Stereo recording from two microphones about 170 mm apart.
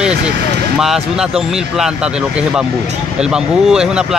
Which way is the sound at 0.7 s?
Centre (ahead or behind).